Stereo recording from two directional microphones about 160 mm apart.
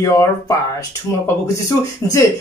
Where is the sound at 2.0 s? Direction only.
15° left (ahead or behind).